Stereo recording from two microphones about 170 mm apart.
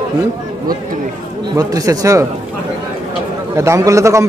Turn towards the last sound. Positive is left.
turn(degrees=-15)  # may be behind; listen again after turning